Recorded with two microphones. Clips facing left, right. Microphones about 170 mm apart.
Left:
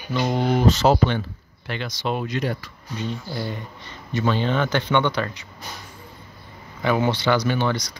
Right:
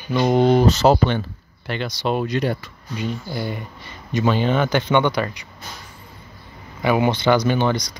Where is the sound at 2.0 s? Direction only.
45° right (ahead or behind).